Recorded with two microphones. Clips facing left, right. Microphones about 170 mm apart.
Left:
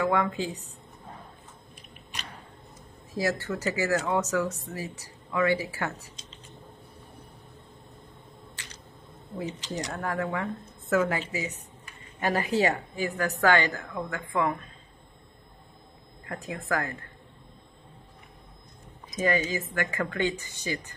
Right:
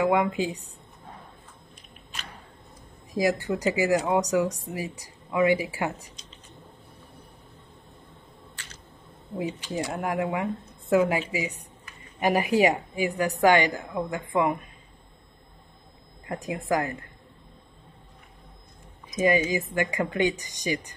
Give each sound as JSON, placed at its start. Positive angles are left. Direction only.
{"t": 0.0, "sound": "speech", "side_deg": -15}
{"t": 3.2, "sound": "speech", "side_deg": -15}
{"t": 9.7, "sound": "speech", "side_deg": -15}
{"t": 16.3, "sound": "speech", "side_deg": -15}
{"t": 19.1, "sound": "speech", "side_deg": -15}